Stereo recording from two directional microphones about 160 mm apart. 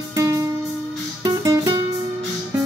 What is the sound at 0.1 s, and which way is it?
Music, 20° right (ahead or behind).